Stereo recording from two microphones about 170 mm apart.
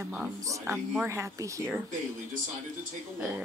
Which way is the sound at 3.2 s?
5° right (ahead or behind).